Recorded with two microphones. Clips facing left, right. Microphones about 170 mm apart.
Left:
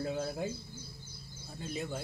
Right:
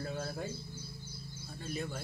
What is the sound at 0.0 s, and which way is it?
Bird, 20° left (ahead or behind).